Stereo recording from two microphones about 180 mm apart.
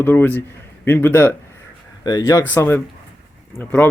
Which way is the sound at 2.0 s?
20° left (ahead or behind).